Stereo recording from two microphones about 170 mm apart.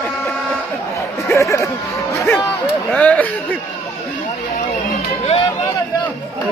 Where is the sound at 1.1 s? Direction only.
15° left (ahead or behind).